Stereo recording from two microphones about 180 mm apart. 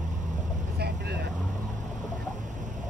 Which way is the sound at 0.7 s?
60° right (ahead or behind).